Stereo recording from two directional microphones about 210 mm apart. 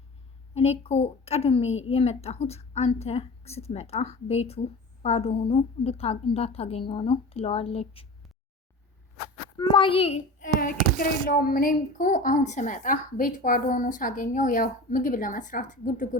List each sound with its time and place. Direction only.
0.5 s a woman's voice: 30° left (ahead or behind)
9.6 s a child's voice: 25° left (ahead or behind)